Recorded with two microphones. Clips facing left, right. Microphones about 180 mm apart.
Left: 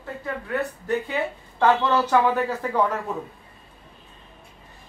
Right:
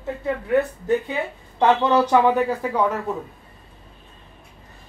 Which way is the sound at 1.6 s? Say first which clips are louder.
Right 3 dB; 15° right (ahead or behind).